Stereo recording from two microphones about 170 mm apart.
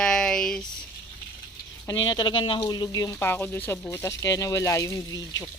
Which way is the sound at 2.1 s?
30° left (ahead or behind).